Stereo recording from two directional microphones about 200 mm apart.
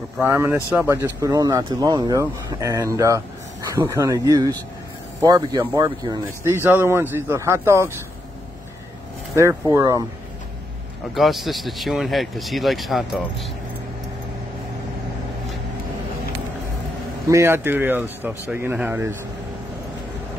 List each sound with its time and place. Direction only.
0.2 s speech: 10° right (ahead or behind)
9.3 s speech: 15° right (ahead or behind)
11.1 s speech: centre (ahead or behind)
17.3 s speech: 15° right (ahead or behind)